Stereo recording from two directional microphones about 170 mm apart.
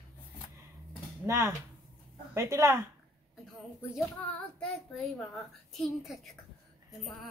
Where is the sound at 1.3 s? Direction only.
15° right (ahead or behind).